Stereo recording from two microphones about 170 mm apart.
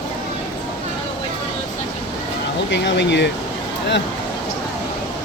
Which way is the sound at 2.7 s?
90° left.